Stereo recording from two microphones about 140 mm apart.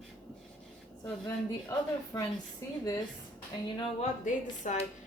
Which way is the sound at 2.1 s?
25° left (ahead or behind).